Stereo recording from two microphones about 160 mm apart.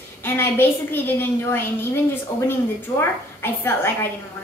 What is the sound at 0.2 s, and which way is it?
A woman's voice, 15° left (ahead or behind).